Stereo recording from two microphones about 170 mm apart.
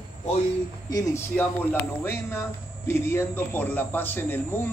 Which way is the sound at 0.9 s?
15° left (ahead or behind).